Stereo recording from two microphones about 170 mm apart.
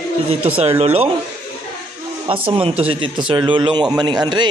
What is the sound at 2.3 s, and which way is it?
A man's voice, 35° right (ahead or behind).